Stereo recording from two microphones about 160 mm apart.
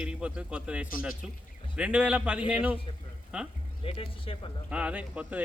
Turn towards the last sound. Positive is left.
turn(degrees=-10)  # may be behind; listen again after turning